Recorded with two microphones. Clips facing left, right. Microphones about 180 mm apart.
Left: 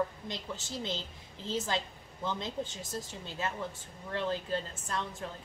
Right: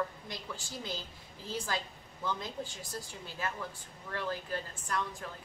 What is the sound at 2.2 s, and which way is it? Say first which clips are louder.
Speech: left 2 dB; 25° left (ahead or behind).